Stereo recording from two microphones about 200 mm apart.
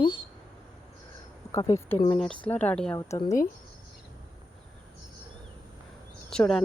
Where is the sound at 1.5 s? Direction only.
15° left (ahead or behind).